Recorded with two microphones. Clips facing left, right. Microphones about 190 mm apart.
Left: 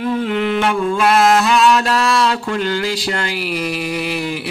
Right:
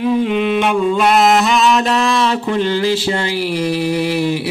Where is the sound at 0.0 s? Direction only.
10° right (ahead or behind).